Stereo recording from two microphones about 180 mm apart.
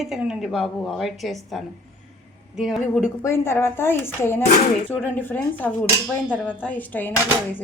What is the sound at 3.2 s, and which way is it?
A woman's voice, 15° left (ahead or behind).